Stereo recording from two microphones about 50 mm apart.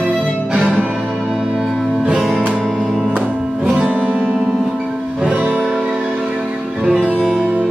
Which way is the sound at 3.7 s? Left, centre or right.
Right.